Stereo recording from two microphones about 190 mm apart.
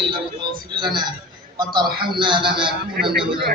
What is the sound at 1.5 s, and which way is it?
A man's voice, 20° right (ahead or behind).